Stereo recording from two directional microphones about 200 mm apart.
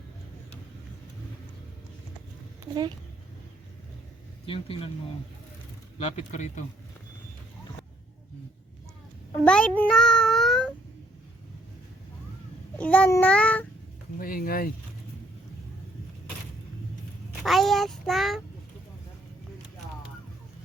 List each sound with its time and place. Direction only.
4.4 s speech: 30° left (ahead or behind)
6.0 s speech: 30° left (ahead or behind)
9.4 s a sound: 5° left (ahead or behind)
12.7 s child singing: 5° left (ahead or behind)
14.2 s speech: 45° left (ahead or behind)
17.4 s child singing: centre (ahead or behind)